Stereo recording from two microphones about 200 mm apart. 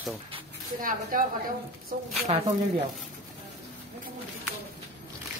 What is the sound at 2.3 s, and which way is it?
Speech, 30° right (ahead or behind).